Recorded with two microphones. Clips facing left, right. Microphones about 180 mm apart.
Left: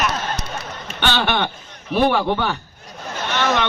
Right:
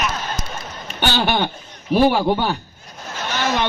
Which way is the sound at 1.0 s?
40° right (ahead or behind).